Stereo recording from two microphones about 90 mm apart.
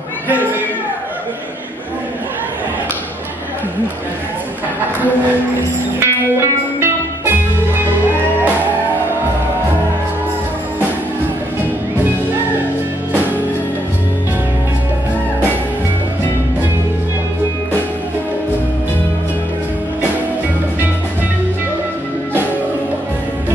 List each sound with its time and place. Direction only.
0.3 s speech: 20° right (ahead or behind)
5.9 s music: 25° right (ahead or behind)